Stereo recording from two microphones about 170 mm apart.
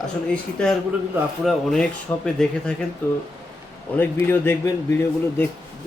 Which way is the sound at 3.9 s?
15° left (ahead or behind).